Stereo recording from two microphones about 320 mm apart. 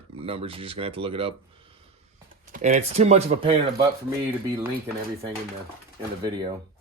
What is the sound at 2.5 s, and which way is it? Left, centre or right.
Speech, right.